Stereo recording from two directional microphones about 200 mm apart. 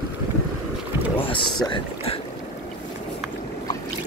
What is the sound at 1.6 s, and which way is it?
Speech, 25° left (ahead or behind).